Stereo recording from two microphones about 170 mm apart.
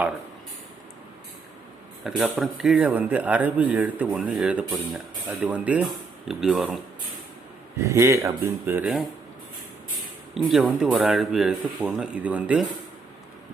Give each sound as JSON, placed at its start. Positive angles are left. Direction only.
{"t": 2.0, "sound": "a man's voice", "side_deg": 0}
{"t": 7.8, "sound": "a man's voice", "side_deg": -15}
{"t": 10.3, "sound": "speech", "side_deg": 0}